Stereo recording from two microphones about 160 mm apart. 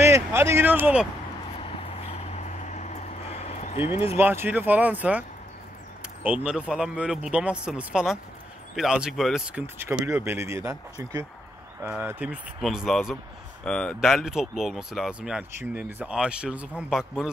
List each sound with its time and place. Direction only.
0.0 s speech: 15° right (ahead or behind)
1.6 s vehicle: 40° left (ahead or behind)
4.2 s speech: 15° right (ahead or behind)
6.2 s speech: 10° right (ahead or behind)
9.8 s speech: 15° right (ahead or behind)
12.6 s speech: centre (ahead or behind)